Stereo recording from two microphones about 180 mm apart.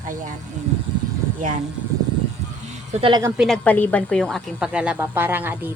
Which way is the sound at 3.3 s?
Centre (ahead or behind).